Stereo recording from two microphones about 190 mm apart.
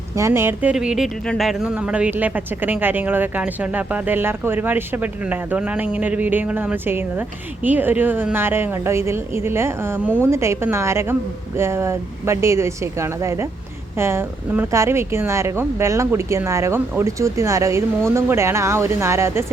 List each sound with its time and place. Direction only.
0.2 s speech: 15° right (ahead or behind)